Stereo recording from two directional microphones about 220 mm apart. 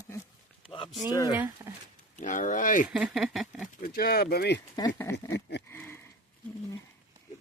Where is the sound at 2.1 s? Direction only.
35° left (ahead or behind).